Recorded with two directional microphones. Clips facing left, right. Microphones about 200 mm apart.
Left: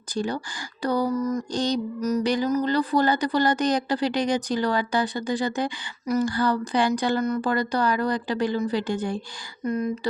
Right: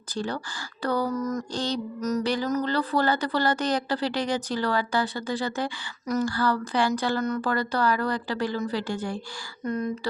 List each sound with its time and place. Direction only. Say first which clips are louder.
0.1 s speech: left 3 dB; 15° left (ahead or behind)
9.6 s speech: left 3 dB; 10° left (ahead or behind)